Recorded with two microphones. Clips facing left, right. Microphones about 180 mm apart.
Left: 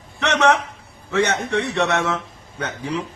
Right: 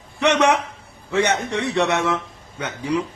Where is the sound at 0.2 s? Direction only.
15° right (ahead or behind).